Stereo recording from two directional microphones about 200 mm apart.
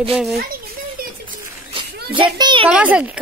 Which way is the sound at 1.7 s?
25° right (ahead or behind).